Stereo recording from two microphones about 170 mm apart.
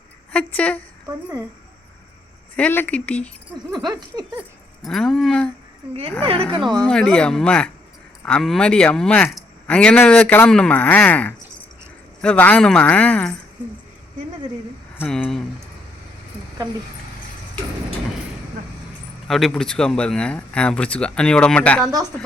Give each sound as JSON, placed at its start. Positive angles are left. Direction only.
{"t": 0.3, "sound": "speech", "side_deg": 10}
{"t": 2.6, "sound": "speech", "side_deg": 10}
{"t": 3.8, "sound": "a sound", "side_deg": -25}
{"t": 4.8, "sound": "speech", "side_deg": 0}
{"t": 6.8, "sound": "speech", "side_deg": 5}
{"t": 15.0, "sound": "speech", "side_deg": 5}
{"t": 19.3, "sound": "speech", "side_deg": 0}